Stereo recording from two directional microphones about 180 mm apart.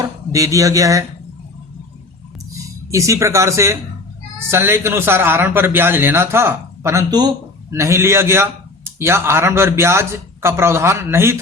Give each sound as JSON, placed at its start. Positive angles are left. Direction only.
{"t": 0.0, "sound": "a man's voice", "side_deg": -15}
{"t": 2.9, "sound": "a man's voice", "side_deg": -15}